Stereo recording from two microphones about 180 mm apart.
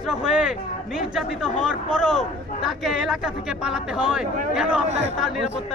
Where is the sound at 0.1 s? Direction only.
5° right (ahead or behind).